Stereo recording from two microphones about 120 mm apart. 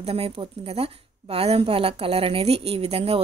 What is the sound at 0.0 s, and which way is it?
A woman's voice, 55° right (ahead or behind).